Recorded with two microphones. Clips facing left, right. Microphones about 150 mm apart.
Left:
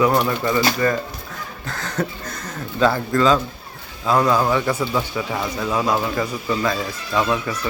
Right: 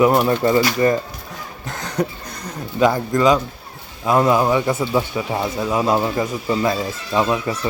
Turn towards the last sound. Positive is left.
turn(degrees=-30)  # may be behind; listen again after turning